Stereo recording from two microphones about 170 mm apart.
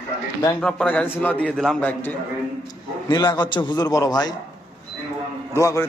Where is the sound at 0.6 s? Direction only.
5° left (ahead or behind).